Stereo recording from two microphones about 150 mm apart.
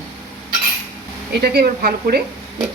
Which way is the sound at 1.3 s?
90° right.